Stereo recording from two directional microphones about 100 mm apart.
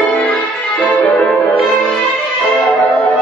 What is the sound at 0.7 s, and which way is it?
Music, 15° left (ahead or behind).